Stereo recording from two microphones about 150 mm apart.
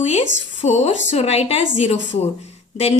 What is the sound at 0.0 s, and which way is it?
A woman's voice, 50° left (ahead or behind).